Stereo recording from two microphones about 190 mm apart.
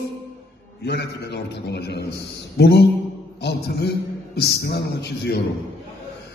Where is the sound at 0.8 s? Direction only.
60° left (ahead or behind).